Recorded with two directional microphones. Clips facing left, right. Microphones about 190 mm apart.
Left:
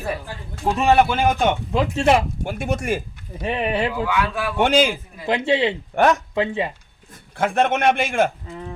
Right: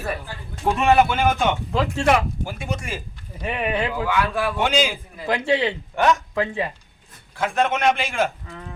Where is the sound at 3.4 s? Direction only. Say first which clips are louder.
Left 2 dB; 25° left (ahead or behind).